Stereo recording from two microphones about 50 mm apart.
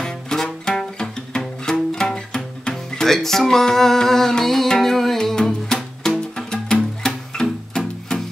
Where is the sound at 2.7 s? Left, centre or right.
Centre.